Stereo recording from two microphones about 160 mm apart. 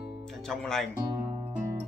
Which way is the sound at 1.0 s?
25° right (ahead or behind).